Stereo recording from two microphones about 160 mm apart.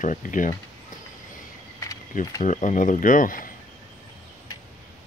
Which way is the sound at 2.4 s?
50° left (ahead or behind).